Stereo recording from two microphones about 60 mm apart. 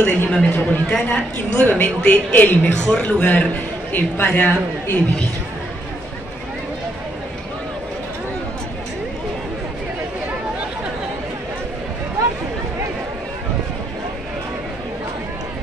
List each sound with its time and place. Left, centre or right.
0.0 s a woman's voice: centre